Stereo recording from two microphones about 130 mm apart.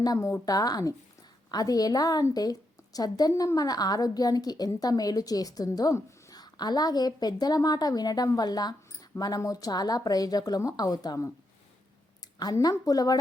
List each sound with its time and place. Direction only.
0.0 s a woman's voice: 25° left (ahead or behind)
12.4 s a woman's voice: 30° left (ahead or behind)